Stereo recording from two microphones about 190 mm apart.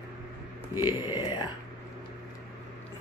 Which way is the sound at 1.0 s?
25° left (ahead or behind).